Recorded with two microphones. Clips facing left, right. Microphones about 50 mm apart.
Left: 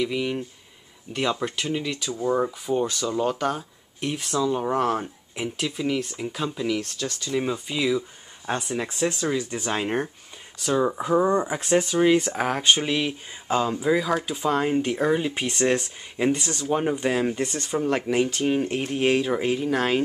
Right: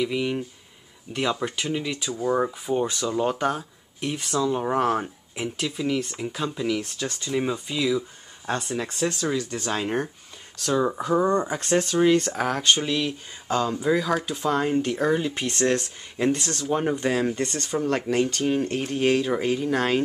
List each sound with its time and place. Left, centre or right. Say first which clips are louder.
0.0 s speech: even; centre
2.2 s speech: even; centre
3.5 s speech: right 1 dB; centre
4.6 s speech: right 1 dB; centre
5.3 s speech: left 1 dB; centre
6.8 s speech: even; centre
7.3 s speech: even; centre